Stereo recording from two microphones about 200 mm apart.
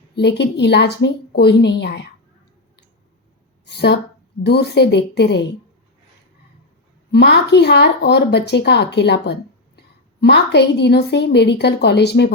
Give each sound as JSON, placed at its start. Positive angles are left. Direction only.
{"t": 0.2, "sound": "speech", "side_deg": 60}
{"t": 3.7, "sound": "a woman's voice", "side_deg": 55}
{"t": 7.1, "sound": "speech", "side_deg": 55}